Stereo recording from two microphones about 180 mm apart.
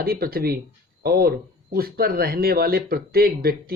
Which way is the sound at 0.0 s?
55° right (ahead or behind).